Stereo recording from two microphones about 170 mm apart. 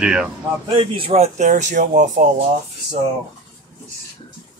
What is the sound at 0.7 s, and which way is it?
Speech, 30° right (ahead or behind).